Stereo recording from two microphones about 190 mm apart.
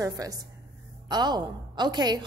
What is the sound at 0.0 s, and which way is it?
A woman's voice, 20° right (ahead or behind).